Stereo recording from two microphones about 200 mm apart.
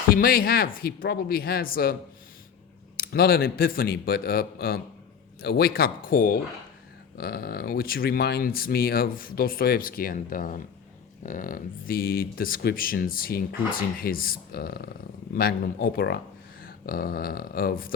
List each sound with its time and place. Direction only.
0.1 s speech: 45° left (ahead or behind)
3.0 s speech: 50° left (ahead or behind)